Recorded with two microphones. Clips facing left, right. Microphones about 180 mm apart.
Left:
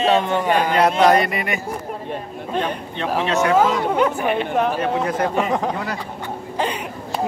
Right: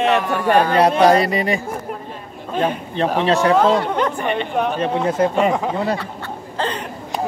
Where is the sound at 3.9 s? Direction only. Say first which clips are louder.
Left 1 dB; 5° left (ahead or behind).